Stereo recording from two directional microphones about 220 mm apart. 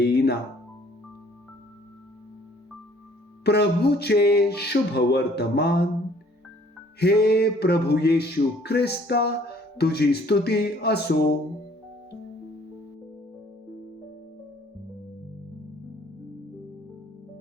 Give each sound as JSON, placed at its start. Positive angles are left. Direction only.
{"t": 0.0, "sound": "music", "side_deg": 45}
{"t": 3.4, "sound": "music", "side_deg": 50}
{"t": 7.0, "sound": "music", "side_deg": 45}